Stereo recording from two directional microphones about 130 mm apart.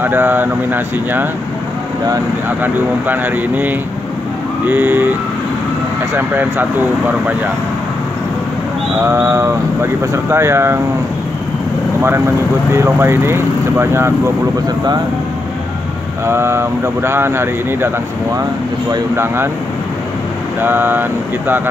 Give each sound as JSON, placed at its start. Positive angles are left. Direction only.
{"t": 0.0, "sound": "speech", "side_deg": -15}
{"t": 2.6, "sound": "speech", "side_deg": -15}
{"t": 6.1, "sound": "speech", "side_deg": -15}
{"t": 9.0, "sound": "speech", "side_deg": -20}
{"t": 12.7, "sound": "speech", "side_deg": -20}
{"t": 16.3, "sound": "speech", "side_deg": -20}
{"t": 19.1, "sound": "speech", "side_deg": -15}
{"t": 20.6, "sound": "speech", "side_deg": -15}